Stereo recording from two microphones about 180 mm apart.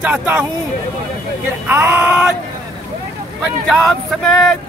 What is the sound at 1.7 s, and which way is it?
Speech, 10° right (ahead or behind).